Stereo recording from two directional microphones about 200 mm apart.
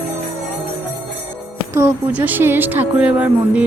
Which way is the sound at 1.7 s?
10° right (ahead or behind).